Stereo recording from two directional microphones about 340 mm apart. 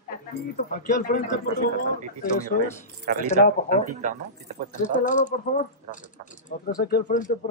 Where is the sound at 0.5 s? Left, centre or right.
Left.